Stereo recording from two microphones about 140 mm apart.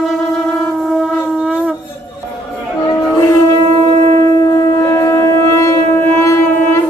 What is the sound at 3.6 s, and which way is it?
Shofar, 40° right (ahead or behind).